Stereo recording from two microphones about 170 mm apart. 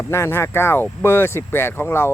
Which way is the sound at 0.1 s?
15° left (ahead or behind).